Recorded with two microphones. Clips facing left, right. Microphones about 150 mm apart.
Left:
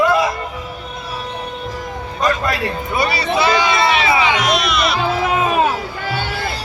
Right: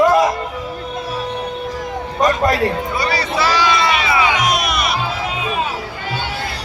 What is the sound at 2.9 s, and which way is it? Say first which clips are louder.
Music: left 2 dB; 20° left (ahead or behind).